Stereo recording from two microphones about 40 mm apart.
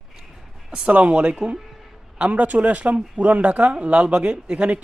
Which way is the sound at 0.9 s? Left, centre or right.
Right.